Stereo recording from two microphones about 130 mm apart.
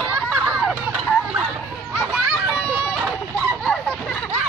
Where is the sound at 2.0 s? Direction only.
Centre (ahead or behind).